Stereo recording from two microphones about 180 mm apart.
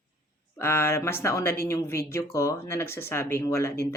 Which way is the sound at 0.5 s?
15° left (ahead or behind).